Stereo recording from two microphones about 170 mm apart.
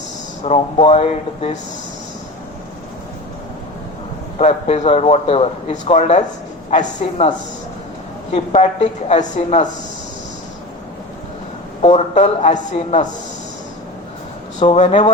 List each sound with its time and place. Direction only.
0.4 s a man's voice: 35° left (ahead or behind)
4.4 s a man's voice: 40° left (ahead or behind)
11.8 s speech: 35° left (ahead or behind)
14.6 s a man's voice: 35° left (ahead or behind)